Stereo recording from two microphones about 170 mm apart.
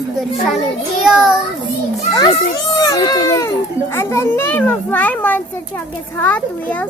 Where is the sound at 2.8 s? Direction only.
20° left (ahead or behind).